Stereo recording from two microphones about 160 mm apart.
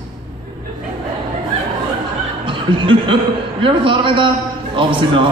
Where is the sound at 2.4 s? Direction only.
30° right (ahead or behind).